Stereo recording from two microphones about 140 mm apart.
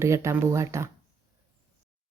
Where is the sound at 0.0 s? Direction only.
20° right (ahead or behind).